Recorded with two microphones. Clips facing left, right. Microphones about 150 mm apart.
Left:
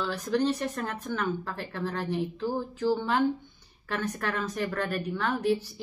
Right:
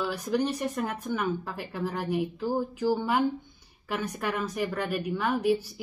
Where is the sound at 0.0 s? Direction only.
10° right (ahead or behind).